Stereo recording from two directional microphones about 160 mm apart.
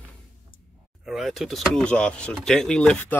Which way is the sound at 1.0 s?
Centre (ahead or behind).